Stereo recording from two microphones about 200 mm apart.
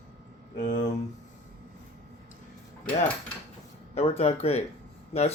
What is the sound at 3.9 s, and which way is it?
A man's voice, 30° left (ahead or behind).